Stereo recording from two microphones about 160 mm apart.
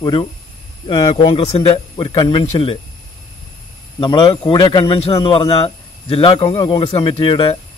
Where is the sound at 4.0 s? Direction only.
30° left (ahead or behind).